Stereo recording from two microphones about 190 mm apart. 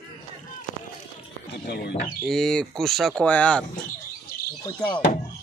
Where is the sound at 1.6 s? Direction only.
60° left (ahead or behind).